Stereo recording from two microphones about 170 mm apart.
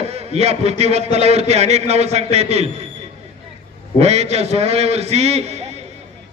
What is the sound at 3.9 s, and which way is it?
A man's voice, 40° right (ahead or behind).